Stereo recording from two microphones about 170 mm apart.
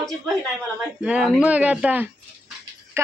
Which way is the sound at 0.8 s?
5° right (ahead or behind).